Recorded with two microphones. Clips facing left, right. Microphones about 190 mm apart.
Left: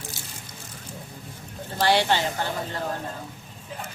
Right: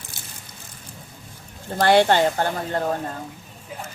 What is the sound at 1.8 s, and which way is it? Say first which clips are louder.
Speech: right 6 dB; 50° right (ahead or behind).